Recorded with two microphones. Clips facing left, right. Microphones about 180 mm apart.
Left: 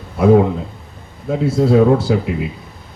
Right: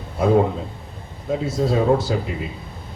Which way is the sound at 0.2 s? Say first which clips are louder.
Left 5 dB; 60° left (ahead or behind).